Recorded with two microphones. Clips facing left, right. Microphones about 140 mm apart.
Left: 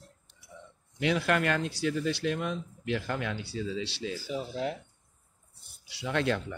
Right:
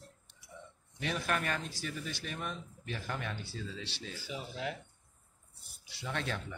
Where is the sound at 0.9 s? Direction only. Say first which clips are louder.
Left 8 dB; 90° left.